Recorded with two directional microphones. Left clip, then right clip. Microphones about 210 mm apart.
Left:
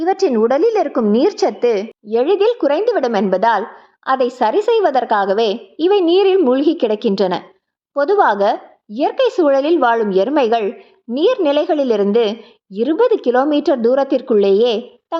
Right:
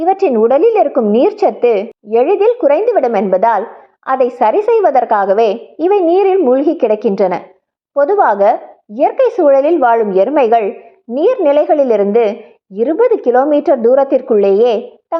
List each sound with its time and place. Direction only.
0.0 s a woman's voice: 10° left (ahead or behind)
2.0 s speech: 30° left (ahead or behind)
2.5 s a woman's voice: 15° left (ahead or behind)
4.0 s a woman's voice: 30° left (ahead or behind)
6.3 s speech: 20° left (ahead or behind)
6.6 s a woman's voice: 35° left (ahead or behind)
8.2 s a woman's voice: 35° left (ahead or behind)